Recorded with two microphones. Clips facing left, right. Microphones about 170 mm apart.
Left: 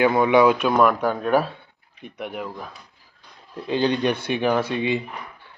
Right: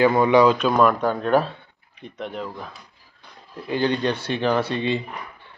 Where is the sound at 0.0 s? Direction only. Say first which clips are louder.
Right 1 dB; 5° left (ahead or behind).